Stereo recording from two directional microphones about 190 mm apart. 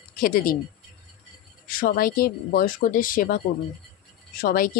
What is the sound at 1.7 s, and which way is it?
Speech, 50° left (ahead or behind).